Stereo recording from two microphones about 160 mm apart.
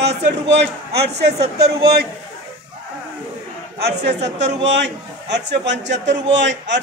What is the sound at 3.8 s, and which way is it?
A man's voice, 90° right.